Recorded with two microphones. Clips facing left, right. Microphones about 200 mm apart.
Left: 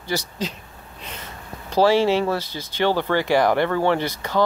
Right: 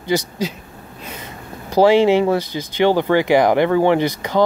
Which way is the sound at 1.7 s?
15° right (ahead or behind).